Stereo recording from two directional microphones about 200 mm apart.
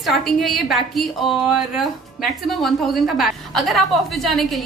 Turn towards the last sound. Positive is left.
turn(degrees=0)  # may be behind; listen again after turning